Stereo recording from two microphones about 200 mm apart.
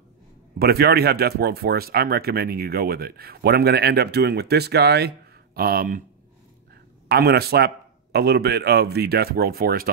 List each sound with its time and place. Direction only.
0.6 s a man's voice: 50° right (ahead or behind)